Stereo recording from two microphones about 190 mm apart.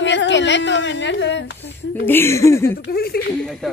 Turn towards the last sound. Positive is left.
turn(degrees=55)  # may be behind; listen again after turning